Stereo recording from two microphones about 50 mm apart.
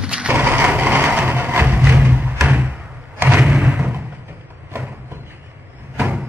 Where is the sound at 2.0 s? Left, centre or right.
Right.